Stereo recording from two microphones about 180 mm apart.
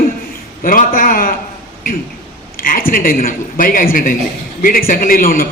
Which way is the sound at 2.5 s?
55° left (ahead or behind).